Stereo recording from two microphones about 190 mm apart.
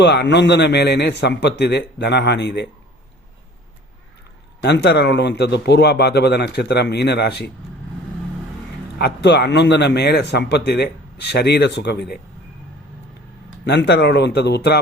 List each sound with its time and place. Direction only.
0.0 s a man's voice: 65° left (ahead or behind)
4.6 s a man's voice: 60° left (ahead or behind)
9.0 s a man's voice: 60° left (ahead or behind)
13.7 s a man's voice: 60° left (ahead or behind)